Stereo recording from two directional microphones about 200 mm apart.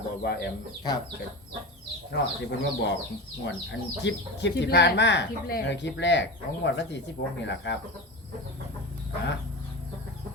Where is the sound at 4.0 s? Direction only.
60° left (ahead or behind).